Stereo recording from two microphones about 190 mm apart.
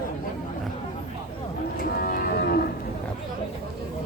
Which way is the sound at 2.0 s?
50° left (ahead or behind).